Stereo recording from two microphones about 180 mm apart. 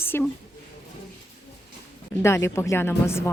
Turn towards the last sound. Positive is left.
turn(degrees=15)  # may be behind; listen again after turning